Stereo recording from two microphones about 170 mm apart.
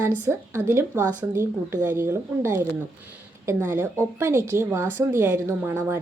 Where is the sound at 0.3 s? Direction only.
15° right (ahead or behind).